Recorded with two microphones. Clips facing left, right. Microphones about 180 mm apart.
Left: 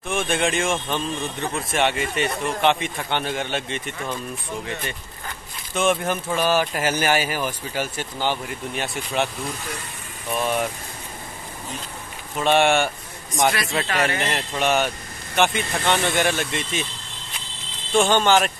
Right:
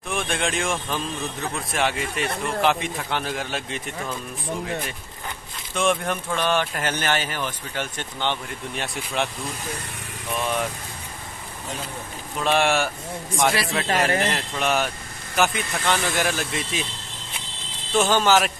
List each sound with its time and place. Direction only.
0.1 s speech: centre (ahead or behind)
5.8 s speech: 5° left (ahead or behind)
10.4 s speech: 5° left (ahead or behind)
12.4 s speech: centre (ahead or behind)
13.3 s a man's voice: 30° right (ahead or behind)
14.2 s speech: centre (ahead or behind)
17.9 s speech: 5° right (ahead or behind)